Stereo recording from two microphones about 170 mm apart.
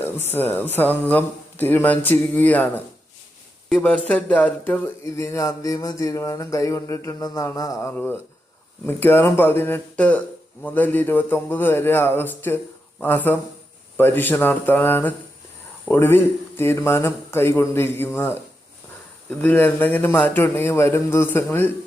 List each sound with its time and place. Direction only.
0.0 s speech: 10° left (ahead or behind)